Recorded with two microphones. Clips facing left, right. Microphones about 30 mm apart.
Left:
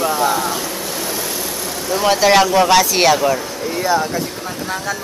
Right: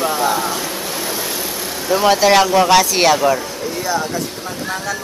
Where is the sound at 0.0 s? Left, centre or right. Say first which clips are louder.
Left 1 dB; centre.